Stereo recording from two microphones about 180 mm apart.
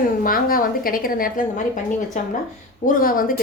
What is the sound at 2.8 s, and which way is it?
Speech, 50° left (ahead or behind).